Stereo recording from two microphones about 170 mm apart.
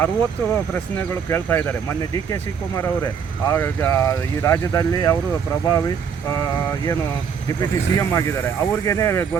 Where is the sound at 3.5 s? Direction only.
15° left (ahead or behind).